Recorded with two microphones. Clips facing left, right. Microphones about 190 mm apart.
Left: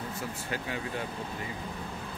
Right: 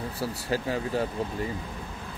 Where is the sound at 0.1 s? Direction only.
35° right (ahead or behind).